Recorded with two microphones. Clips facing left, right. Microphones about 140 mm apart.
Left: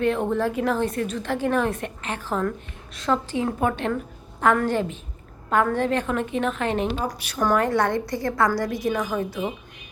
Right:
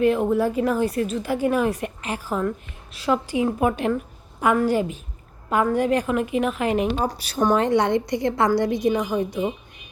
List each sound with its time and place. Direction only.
0.0 s a woman's voice: 5° right (ahead or behind)
6.9 s a woman's voice: 35° right (ahead or behind); by 9.5 s 15° right (ahead or behind)